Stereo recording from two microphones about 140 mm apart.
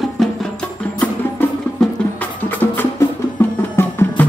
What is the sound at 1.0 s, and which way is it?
Music, 10° left (ahead or behind).